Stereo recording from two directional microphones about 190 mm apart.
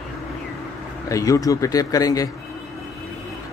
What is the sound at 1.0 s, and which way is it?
Speech, 15° left (ahead or behind).